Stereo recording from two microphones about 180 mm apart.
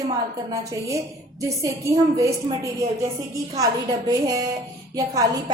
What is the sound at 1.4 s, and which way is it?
A woman's voice, 15° right (ahead or behind).